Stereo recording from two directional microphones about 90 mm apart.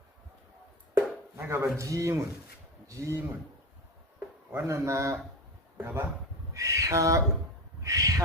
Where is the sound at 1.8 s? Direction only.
35° right (ahead or behind).